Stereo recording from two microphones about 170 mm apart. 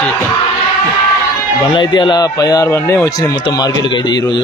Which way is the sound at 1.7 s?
25° left (ahead or behind).